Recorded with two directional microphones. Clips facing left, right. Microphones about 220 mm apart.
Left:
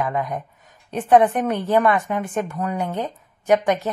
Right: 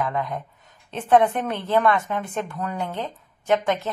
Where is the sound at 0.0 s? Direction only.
15° left (ahead or behind).